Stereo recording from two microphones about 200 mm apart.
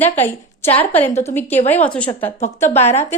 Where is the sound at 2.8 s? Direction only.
35° left (ahead or behind).